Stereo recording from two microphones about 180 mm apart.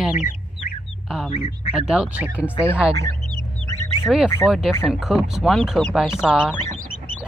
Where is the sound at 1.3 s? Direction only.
35° left (ahead or behind).